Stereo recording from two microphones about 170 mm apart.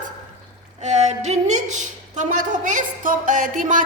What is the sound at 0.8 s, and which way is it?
A woman's voice, 45° right (ahead or behind).